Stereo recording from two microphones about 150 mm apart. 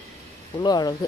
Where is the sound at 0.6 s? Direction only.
25° left (ahead or behind).